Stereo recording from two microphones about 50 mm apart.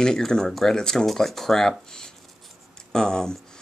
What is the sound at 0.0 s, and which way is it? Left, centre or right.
Speech, centre.